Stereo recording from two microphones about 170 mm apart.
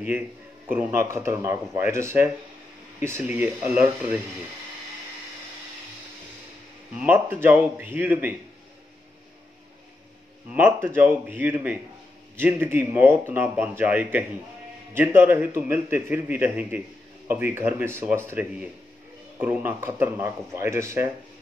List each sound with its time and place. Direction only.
0.7 s speech: 10° right (ahead or behind)
7.0 s speech: 10° right (ahead or behind)
10.5 s speech: 10° right (ahead or behind)